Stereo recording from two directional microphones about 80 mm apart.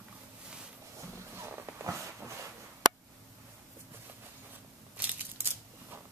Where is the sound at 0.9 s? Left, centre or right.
Right.